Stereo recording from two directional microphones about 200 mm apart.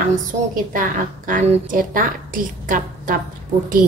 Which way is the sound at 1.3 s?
45° right (ahead or behind).